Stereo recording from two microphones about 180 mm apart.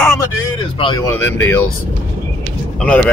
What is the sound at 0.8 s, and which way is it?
Speech, 25° left (ahead or behind).